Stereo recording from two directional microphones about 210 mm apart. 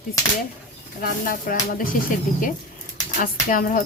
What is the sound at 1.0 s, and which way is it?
Speech, 40° left (ahead or behind).